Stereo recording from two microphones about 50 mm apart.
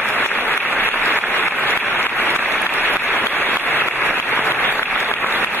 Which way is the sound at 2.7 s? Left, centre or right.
Left.